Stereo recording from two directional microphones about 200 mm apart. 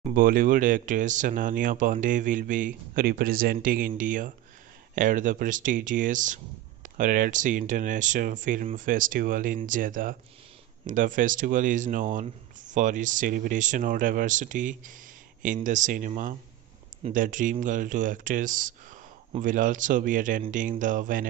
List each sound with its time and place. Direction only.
0.0 s speech: 45° right (ahead or behind)